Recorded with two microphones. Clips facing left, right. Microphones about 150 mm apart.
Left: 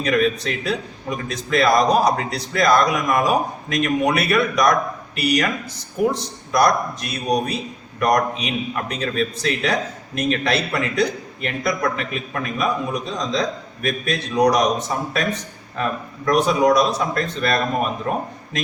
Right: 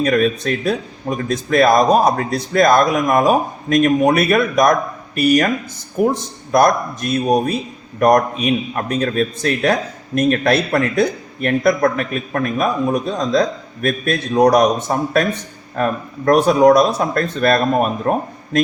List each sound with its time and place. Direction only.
0.0 s a man's voice: 50° right (ahead or behind)